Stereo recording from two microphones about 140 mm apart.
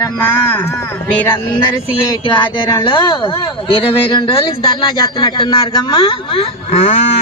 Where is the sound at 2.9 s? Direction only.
35° left (ahead or behind).